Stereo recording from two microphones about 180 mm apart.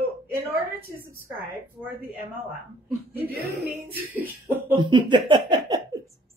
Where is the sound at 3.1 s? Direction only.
60° right (ahead or behind).